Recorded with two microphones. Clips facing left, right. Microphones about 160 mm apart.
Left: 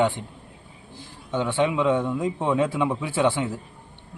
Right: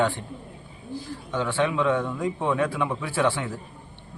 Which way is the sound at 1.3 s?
20° left (ahead or behind).